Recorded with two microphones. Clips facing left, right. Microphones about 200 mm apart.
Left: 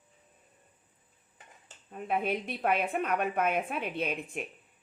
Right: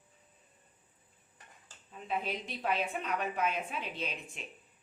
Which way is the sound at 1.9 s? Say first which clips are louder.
Left 6 dB; 55° left (ahead or behind).